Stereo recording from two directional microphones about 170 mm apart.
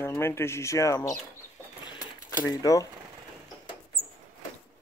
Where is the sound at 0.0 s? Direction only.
15° left (ahead or behind).